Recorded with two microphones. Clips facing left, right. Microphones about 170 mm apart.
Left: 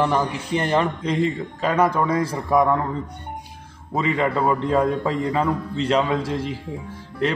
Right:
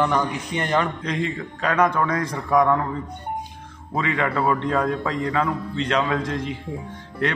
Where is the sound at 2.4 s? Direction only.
20° left (ahead or behind).